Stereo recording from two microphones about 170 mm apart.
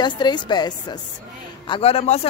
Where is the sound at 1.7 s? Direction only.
35° left (ahead or behind).